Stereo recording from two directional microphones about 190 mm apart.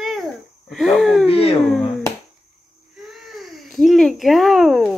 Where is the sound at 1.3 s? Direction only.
30° left (ahead or behind).